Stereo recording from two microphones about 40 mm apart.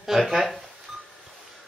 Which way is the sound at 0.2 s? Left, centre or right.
Centre.